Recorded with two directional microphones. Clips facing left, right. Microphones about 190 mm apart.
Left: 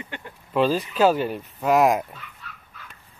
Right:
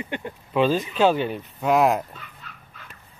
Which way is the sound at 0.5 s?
Centre (ahead or behind).